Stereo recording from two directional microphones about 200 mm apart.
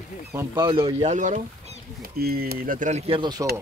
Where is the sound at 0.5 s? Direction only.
25° right (ahead or behind).